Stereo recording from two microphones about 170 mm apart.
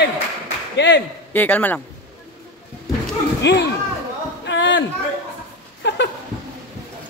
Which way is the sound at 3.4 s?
90° left.